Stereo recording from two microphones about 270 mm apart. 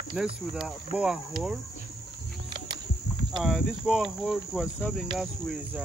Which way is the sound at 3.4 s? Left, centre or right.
Centre.